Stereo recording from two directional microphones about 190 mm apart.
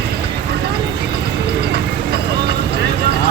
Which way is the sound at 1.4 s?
60° right (ahead or behind).